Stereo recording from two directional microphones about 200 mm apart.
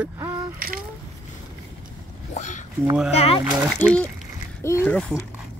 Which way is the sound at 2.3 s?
35° left (ahead or behind).